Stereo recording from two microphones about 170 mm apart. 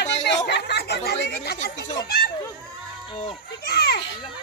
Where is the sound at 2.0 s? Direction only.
65° left (ahead or behind).